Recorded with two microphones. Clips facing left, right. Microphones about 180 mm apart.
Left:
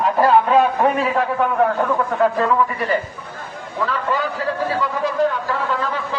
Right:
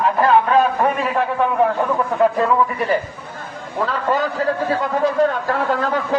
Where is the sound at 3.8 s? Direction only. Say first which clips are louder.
Right 2 dB; 40° right (ahead or behind).